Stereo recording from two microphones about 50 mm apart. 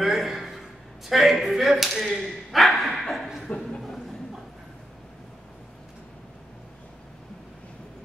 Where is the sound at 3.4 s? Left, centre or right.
Centre.